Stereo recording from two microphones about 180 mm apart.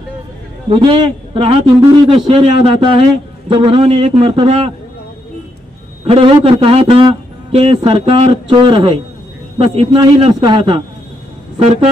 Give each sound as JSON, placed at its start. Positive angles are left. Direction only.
{"t": 0.7, "sound": "a man's voice", "side_deg": -30}
{"t": 6.0, "sound": "a man's voice", "side_deg": -30}